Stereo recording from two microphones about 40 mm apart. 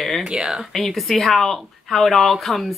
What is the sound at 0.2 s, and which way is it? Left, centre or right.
Speech, right.